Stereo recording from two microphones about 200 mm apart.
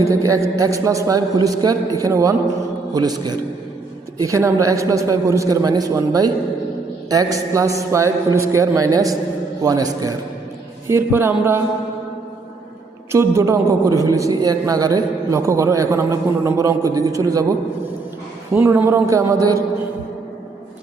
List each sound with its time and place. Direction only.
0.0 s a man's voice: 15° right (ahead or behind)
13.1 s a man's voice: 15° right (ahead or behind)
18.5 s a man's voice: 10° right (ahead or behind)